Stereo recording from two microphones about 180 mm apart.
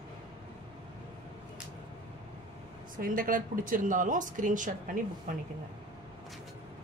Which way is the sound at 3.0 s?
50° right (ahead or behind).